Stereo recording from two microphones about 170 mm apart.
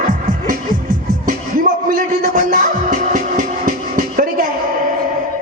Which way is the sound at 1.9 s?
50° right (ahead or behind).